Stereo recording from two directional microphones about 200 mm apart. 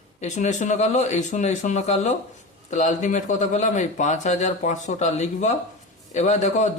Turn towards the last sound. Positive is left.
turn(degrees=35)  # may be behind; listen again after turning